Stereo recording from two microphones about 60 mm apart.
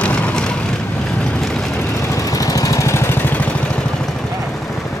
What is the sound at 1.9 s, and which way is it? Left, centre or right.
Vehicle, left.